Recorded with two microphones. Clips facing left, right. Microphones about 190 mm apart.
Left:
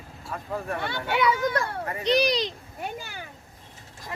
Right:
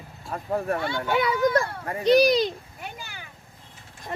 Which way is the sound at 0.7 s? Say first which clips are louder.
Right 2 dB; 45° right (ahead or behind).